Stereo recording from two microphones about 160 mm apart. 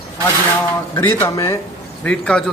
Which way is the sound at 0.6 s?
15° left (ahead or behind).